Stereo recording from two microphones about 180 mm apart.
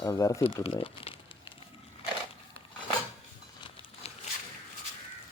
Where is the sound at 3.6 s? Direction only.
35° left (ahead or behind).